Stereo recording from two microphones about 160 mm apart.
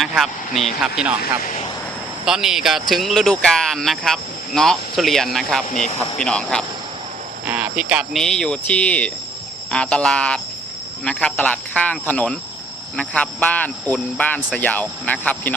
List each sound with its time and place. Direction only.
0.0 s speech: centre (ahead or behind)
2.2 s speech: 5° right (ahead or behind)
5.6 s speech: 50° left (ahead or behind)
6.1 s speech: 5° left (ahead or behind)
7.4 s speech: 5° right (ahead or behind); by 15.5 s 10° left (ahead or behind)